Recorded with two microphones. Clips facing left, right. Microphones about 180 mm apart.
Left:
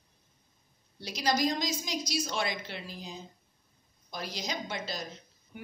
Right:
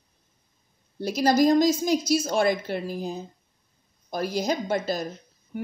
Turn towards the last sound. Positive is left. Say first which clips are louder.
# right 10 dB
turn(degrees=-50)  # may be behind; listen again after turning